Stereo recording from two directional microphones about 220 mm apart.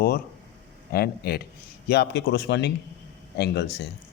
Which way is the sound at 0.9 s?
45° left (ahead or behind).